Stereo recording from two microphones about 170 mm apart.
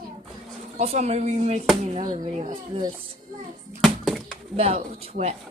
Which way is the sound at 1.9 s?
30° right (ahead or behind).